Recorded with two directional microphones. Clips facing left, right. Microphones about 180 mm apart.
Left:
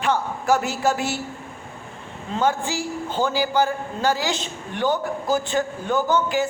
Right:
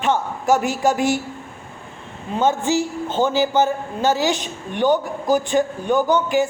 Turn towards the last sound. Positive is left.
turn(degrees=-20)  # may be behind; listen again after turning